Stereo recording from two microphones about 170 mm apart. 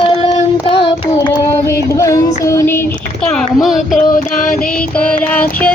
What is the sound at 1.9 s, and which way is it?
Music, 20° left (ahead or behind).